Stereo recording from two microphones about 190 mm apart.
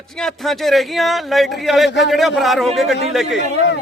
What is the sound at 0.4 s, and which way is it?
Speech, centre (ahead or behind).